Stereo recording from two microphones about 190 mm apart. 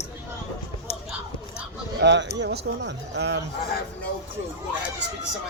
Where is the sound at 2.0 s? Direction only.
65° right (ahead or behind).